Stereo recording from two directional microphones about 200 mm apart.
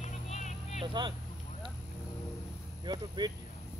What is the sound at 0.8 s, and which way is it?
Speech, 25° right (ahead or behind).